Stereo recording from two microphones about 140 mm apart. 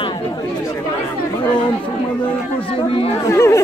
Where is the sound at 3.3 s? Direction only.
20° left (ahead or behind).